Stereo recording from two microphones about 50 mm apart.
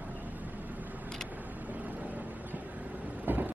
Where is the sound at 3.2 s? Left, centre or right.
Right.